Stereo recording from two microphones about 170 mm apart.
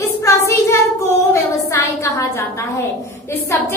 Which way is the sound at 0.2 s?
15° left (ahead or behind).